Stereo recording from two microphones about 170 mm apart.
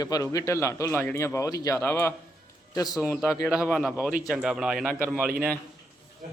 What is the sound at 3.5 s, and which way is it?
Speech, centre (ahead or behind).